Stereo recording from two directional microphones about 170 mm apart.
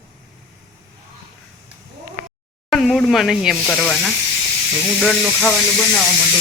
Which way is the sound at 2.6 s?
Centre (ahead or behind).